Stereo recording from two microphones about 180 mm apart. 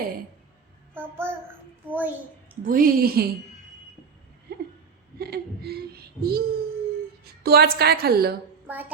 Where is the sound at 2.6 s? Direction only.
50° right (ahead or behind).